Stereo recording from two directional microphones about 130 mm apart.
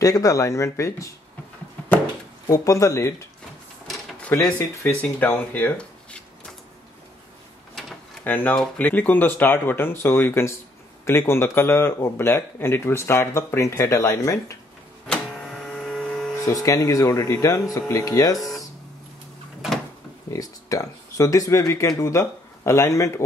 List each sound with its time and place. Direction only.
0.0 s speech: 25° left (ahead or behind)
2.5 s speech: 25° left (ahead or behind)
4.6 s speech: 15° left (ahead or behind)
8.2 s speech: 15° left (ahead or behind)
15.0 s power windows: 5° left (ahead or behind)
16.4 s speech: 25° left (ahead or behind)
20.2 s speech: 25° left (ahead or behind)